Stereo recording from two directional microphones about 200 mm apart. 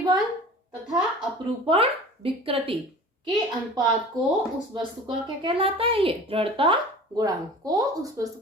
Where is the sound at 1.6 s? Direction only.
25° right (ahead or behind).